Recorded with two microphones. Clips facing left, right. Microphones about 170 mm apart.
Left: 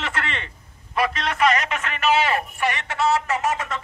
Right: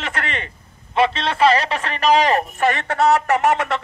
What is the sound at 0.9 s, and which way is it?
A man's voice, 25° right (ahead or behind).